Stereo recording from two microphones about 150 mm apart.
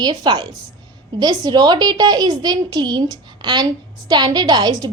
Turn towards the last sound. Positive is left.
turn(degrees=-30)  # may be behind; listen again after turning